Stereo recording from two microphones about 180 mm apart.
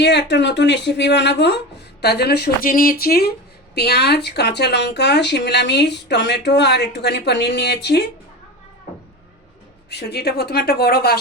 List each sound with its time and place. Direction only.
0.0 s speech: 70° left (ahead or behind)
9.9 s a woman's voice: 65° left (ahead or behind)